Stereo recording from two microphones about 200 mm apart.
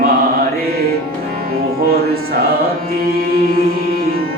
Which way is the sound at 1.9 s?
50° right (ahead or behind).